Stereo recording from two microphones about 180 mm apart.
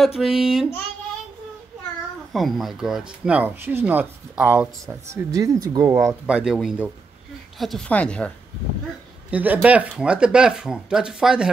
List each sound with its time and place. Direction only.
0.0 s speech: centre (ahead or behind)
2.3 s speech: centre (ahead or behind); by 6.1 s 15° right (ahead or behind)
6.2 s speech: 5° right (ahead or behind)
9.3 s speech: 10° right (ahead or behind)